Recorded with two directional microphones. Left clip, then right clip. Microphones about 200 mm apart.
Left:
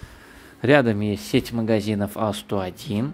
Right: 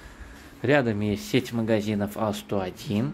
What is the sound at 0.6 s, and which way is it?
Speech, 30° left (ahead or behind).